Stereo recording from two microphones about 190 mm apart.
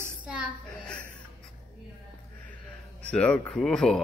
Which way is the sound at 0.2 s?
5° right (ahead or behind).